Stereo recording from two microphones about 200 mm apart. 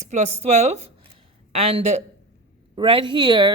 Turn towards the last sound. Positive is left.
turn(degrees=-20)  # may be behind; listen again after turning